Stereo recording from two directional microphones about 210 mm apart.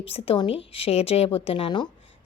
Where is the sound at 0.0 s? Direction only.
25° left (ahead or behind).